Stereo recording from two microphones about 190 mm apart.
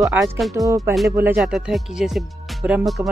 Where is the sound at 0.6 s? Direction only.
20° right (ahead or behind).